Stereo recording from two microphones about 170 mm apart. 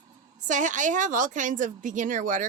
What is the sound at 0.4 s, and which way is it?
Speech, 45° right (ahead or behind).